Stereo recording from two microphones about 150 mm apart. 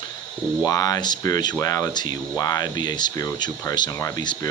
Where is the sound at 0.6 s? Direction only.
25° left (ahead or behind).